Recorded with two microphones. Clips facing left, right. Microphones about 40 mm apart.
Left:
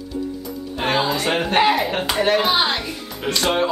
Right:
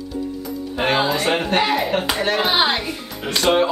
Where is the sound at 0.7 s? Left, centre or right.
Centre.